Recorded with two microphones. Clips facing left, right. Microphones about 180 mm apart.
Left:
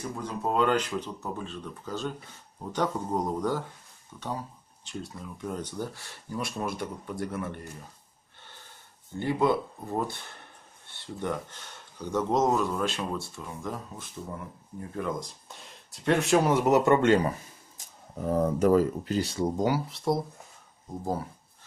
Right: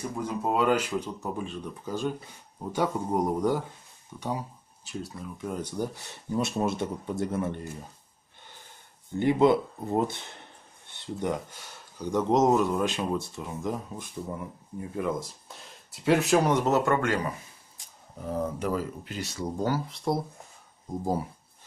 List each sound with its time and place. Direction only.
0.2 s speech: 10° right (ahead or behind)
9.2 s speech: 20° right (ahead or behind); by 17.3 s 25° left (ahead or behind)
17.7 s speech: 45° left (ahead or behind)
20.1 s speech: centre (ahead or behind)
21.0 s speech: 10° right (ahead or behind)